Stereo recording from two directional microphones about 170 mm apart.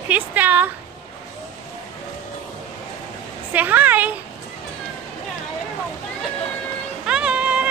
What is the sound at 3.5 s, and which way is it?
Speech, 10° right (ahead or behind).